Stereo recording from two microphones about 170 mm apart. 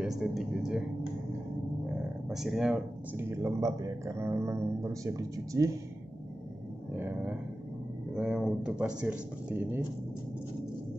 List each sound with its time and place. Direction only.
0.2 s a man's voice: centre (ahead or behind)
2.2 s speech: centre (ahead or behind); by 5.7 s 20° right (ahead or behind)
7.0 s speech: 10° right (ahead or behind)